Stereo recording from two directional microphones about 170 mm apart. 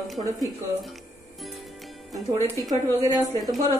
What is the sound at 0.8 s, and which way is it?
Music, centre (ahead or behind).